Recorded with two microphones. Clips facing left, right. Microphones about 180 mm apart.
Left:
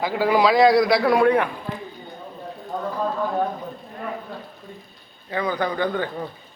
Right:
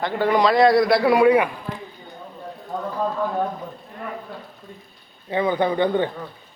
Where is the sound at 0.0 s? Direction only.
5° left (ahead or behind).